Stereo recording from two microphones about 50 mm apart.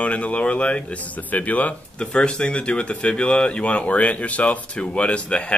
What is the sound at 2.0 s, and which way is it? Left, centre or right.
Speech, centre.